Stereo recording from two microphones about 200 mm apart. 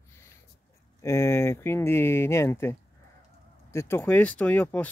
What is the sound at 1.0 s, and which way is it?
Speech, 15° left (ahead or behind).